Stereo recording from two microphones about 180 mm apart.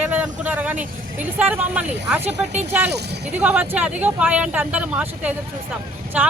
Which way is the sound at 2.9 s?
65° right (ahead or behind).